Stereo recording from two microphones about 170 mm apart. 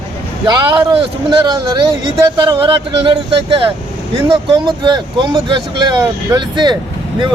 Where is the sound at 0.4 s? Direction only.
25° right (ahead or behind).